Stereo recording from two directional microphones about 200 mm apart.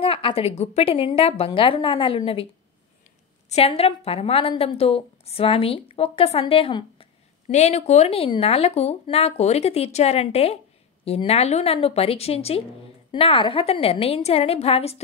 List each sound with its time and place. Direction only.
0.0 s a woman's voice: 25° left (ahead or behind)
3.4 s a woman's voice: 30° left (ahead or behind)